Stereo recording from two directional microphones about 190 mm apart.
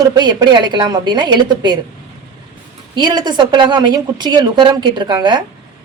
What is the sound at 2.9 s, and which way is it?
A woman's voice, 20° right (ahead or behind).